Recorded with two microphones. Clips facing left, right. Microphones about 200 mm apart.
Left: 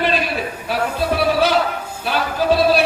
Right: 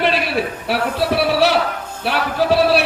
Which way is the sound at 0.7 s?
70° right (ahead or behind).